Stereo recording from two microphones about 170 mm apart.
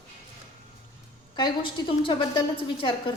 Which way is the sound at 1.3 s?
30° left (ahead or behind).